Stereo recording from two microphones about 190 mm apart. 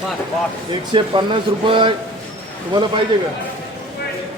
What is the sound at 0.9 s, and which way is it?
Speech, 25° right (ahead or behind).